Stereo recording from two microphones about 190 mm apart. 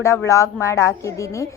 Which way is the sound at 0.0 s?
15° left (ahead or behind).